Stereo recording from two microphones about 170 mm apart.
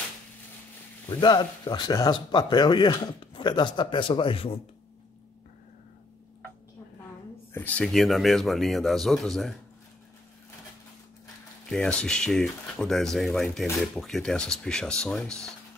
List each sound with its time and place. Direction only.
1.2 s speech: 25° left (ahead or behind)
7.5 s speech: 10° left (ahead or behind)
11.7 s speech: 5° left (ahead or behind)